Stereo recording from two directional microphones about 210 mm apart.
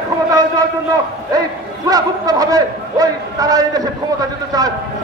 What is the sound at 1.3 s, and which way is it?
A man's voice, 15° right (ahead or behind).